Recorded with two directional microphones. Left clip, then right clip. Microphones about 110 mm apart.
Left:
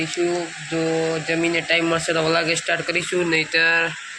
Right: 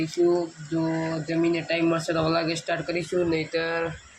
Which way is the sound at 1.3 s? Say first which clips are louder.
Left 4 dB; 15° right (ahead or behind).